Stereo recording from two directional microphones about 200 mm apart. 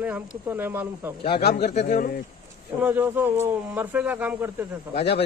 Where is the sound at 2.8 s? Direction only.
10° right (ahead or behind).